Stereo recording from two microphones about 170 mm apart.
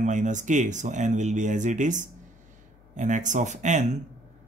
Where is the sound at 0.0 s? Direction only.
45° right (ahead or behind).